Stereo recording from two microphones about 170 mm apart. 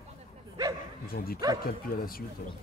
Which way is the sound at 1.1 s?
60° left (ahead or behind).